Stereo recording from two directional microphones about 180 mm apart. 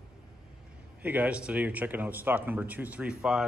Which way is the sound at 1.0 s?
10° right (ahead or behind).